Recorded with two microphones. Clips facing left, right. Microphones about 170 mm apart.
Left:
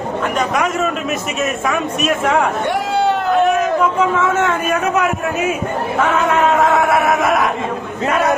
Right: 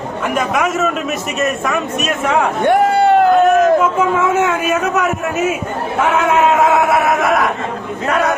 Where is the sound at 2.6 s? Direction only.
55° right (ahead or behind).